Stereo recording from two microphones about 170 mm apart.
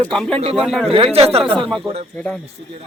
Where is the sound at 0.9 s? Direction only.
35° right (ahead or behind).